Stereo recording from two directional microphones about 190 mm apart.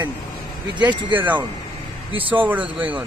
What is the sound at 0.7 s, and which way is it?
Speech, 25° right (ahead or behind).